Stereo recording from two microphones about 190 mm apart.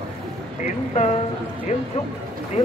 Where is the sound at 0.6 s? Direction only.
35° left (ahead or behind).